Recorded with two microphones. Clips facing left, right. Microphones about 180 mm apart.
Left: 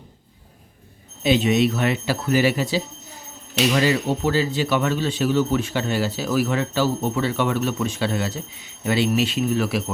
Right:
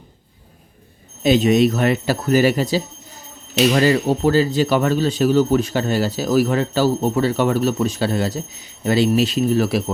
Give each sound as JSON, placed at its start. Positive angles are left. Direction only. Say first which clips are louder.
{"t": 1.2, "sound": "speech", "louder": "right 4 dB", "side_deg": -45}